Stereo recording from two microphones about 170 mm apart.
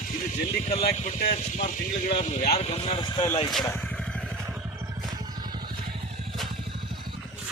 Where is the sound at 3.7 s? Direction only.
5° left (ahead or behind).